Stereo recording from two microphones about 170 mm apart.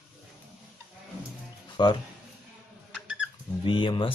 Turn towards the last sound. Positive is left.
turn(degrees=30)  # may be behind; listen again after turning